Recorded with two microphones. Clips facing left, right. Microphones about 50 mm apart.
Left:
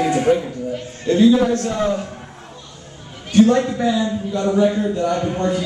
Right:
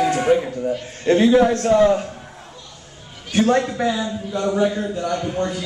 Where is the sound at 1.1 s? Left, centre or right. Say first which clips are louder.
Even; right.